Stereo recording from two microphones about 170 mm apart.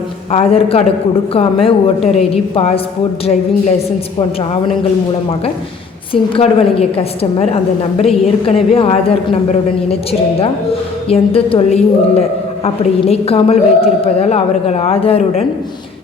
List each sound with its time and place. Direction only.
0.3 s a woman's voice: 35° left (ahead or behind)
6.3 s a woman's voice: 35° left (ahead or behind)